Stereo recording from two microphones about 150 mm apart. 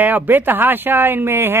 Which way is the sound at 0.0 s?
10° right (ahead or behind).